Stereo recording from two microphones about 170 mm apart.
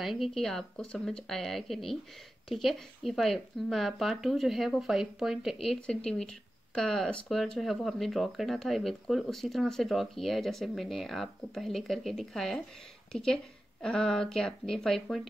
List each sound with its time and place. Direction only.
0.0 s speech: centre (ahead or behind)